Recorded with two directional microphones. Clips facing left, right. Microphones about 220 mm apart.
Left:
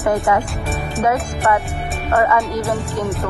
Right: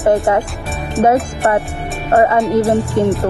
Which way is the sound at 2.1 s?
30° right (ahead or behind).